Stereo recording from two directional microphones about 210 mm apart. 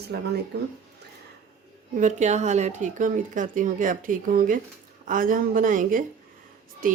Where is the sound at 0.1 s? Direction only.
50° right (ahead or behind).